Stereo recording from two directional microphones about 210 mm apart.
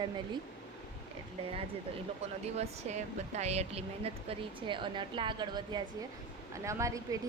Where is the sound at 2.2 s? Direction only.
30° right (ahead or behind).